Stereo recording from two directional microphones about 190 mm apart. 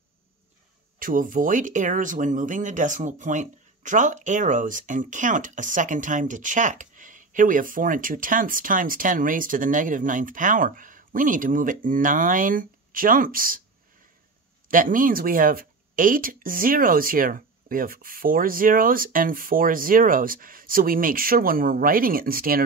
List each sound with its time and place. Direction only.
0.9 s speech: 45° right (ahead or behind)
14.7 s speech: 45° right (ahead or behind)